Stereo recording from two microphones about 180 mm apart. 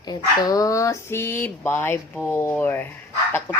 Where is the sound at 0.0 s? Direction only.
20° left (ahead or behind).